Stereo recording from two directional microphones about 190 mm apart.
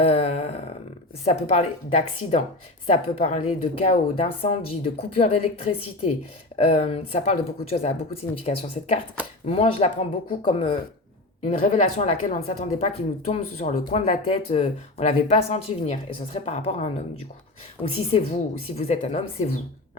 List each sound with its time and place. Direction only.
0.0 s a sound: 30° left (ahead or behind)
1.2 s speech: 35° left (ahead or behind)
12.9 s speech: 35° left (ahead or behind)
17.9 s speech: 30° left (ahead or behind)